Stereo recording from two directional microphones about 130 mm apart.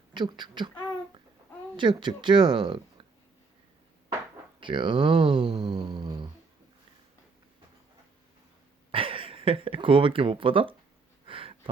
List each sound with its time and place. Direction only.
0.1 s speech: 35° right (ahead or behind)
1.7 s speech: 40° right (ahead or behind)
4.6 s speech: 40° right (ahead or behind)
8.9 s speech: 45° right (ahead or behind)
11.3 s a sound: 45° right (ahead or behind)